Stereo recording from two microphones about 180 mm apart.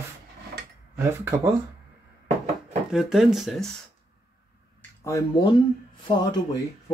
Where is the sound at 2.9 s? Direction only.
5° right (ahead or behind).